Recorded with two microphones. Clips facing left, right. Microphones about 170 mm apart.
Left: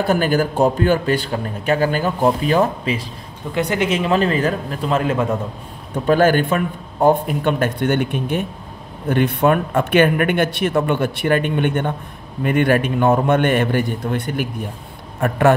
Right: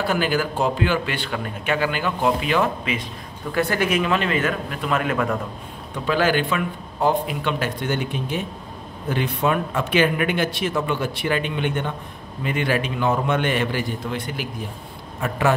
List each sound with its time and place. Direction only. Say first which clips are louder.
0.0 s a man's voice: left 5 dB; 45° left (ahead or behind)
3.5 s a man's voice: left 2 dB; 20° left (ahead or behind)
6.0 s a man's voice: left 6 dB; 50° left (ahead or behind)